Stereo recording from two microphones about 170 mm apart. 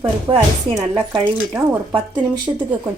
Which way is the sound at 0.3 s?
25° right (ahead or behind).